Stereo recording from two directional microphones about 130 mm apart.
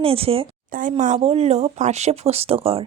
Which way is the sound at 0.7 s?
85° right.